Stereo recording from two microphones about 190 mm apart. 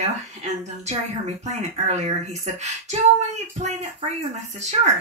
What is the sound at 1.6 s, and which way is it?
Speech, 35° right (ahead or behind).